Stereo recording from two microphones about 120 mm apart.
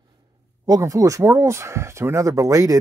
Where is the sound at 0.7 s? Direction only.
30° right (ahead or behind).